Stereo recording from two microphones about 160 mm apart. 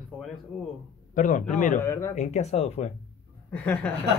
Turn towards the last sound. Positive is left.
turn(degrees=10)  # may be behind; listen again after turning